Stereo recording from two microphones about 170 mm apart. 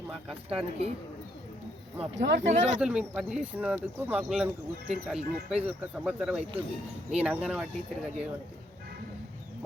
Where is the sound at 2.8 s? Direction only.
5° right (ahead or behind).